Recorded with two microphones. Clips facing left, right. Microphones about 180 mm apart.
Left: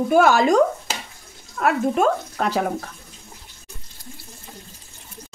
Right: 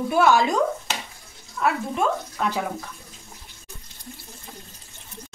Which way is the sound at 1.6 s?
55° left (ahead or behind).